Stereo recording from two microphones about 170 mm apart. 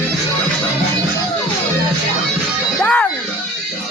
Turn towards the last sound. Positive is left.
turn(degrees=10)  # may be behind; listen again after turning